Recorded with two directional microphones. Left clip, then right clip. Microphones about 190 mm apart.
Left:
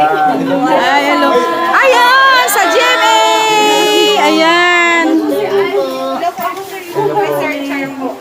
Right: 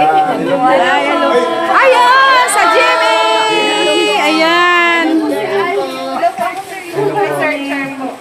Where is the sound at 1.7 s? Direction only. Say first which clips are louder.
Even; 25° left (ahead or behind).